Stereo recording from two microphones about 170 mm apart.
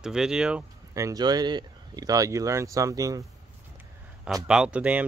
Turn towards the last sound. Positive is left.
turn(degrees=-5)  # may be behind; listen again after turning